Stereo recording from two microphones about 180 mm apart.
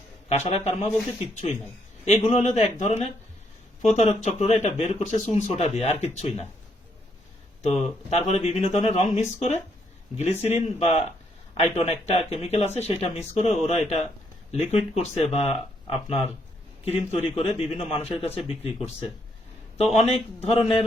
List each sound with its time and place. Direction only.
0.3 s speech: 35° left (ahead or behind)
7.6 s speech: 40° left (ahead or behind)